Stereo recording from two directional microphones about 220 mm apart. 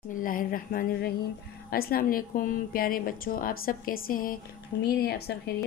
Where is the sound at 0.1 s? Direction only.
40° left (ahead or behind).